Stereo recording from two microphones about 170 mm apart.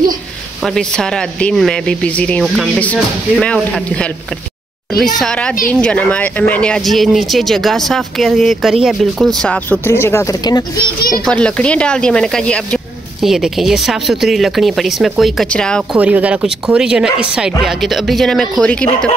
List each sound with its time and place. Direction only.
0.7 s speech: 5° left (ahead or behind); by 10.6 s 20° left (ahead or behind)
11.0 s a child's voice: 60° left (ahead or behind)
11.2 s speech: 5° left (ahead or behind)
16.0 s speech: 10° right (ahead or behind)